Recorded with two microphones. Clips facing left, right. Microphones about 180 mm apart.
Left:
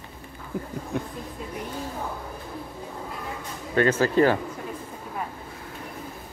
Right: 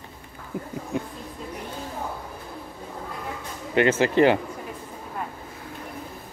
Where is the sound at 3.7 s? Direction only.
20° right (ahead or behind).